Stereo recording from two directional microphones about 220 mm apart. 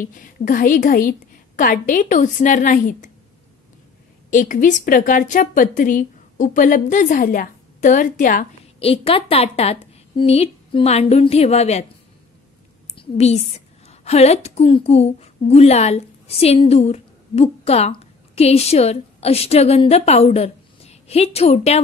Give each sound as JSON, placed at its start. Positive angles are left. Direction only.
{"t": 0.0, "sound": "a woman's voice", "side_deg": 40}
{"t": 4.3, "sound": "a woman's voice", "side_deg": 35}
{"t": 12.9, "sound": "a woman's voice", "side_deg": 25}